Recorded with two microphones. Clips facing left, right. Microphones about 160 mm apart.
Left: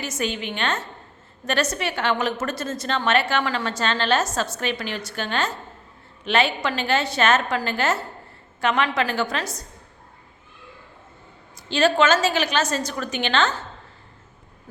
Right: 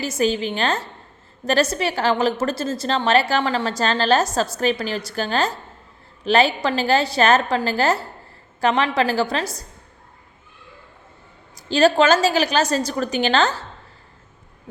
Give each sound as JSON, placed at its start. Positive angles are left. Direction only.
{"t": 0.0, "sound": "a woman's voice", "side_deg": -35}
{"t": 11.5, "sound": "a woman's voice", "side_deg": -35}